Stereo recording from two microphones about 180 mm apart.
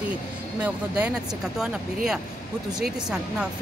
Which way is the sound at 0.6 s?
5° right (ahead or behind).